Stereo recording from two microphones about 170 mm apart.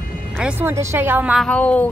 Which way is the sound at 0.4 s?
10° right (ahead or behind).